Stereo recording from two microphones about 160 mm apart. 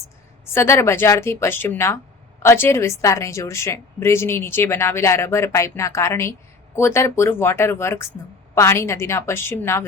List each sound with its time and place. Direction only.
0.5 s a woman's voice: 15° left (ahead or behind)